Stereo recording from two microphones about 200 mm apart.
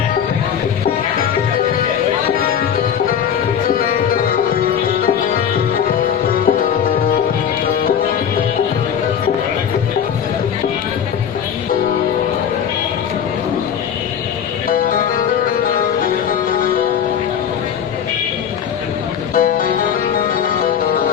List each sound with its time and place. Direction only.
19.3 s music: 40° left (ahead or behind)